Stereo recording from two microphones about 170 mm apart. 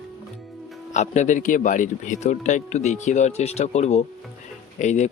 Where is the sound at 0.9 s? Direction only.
45° left (ahead or behind).